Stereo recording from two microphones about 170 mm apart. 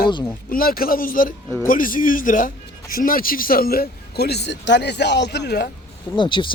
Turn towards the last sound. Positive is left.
turn(degrees=30)  # may be behind; listen again after turning